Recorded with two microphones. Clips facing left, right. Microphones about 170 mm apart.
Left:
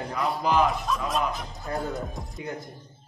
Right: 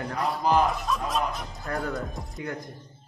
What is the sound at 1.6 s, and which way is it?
Speech, 20° left (ahead or behind).